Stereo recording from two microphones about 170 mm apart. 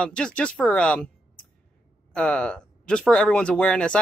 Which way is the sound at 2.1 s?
5° left (ahead or behind).